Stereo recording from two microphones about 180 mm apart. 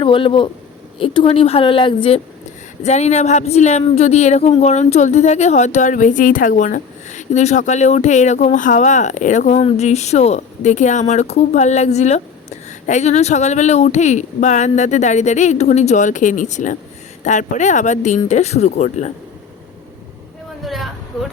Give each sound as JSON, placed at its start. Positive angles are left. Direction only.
{"t": 0.0, "sound": "a woman's voice", "side_deg": 30}
{"t": 20.7, "sound": "a sound", "side_deg": 0}
{"t": 21.1, "sound": "speech", "side_deg": 0}